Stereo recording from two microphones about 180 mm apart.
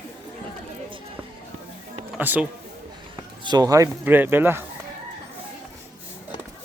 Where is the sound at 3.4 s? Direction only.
20° right (ahead or behind).